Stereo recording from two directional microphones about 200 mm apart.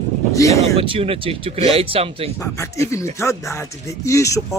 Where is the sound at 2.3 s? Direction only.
15° left (ahead or behind).